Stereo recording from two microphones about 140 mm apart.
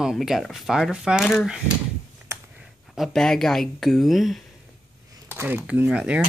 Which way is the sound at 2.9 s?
Centre (ahead or behind).